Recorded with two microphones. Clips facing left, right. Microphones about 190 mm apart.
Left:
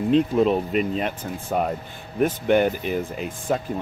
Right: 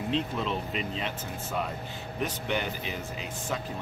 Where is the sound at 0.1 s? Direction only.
50° left (ahead or behind).